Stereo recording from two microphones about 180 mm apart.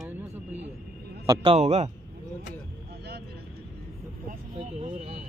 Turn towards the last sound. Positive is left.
turn(degrees=-35)  # may be behind; listen again after turning